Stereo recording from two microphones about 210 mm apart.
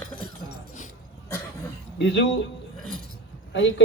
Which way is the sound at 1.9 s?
55° left (ahead or behind).